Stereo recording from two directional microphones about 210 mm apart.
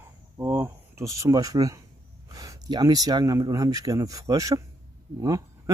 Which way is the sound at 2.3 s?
15° right (ahead or behind).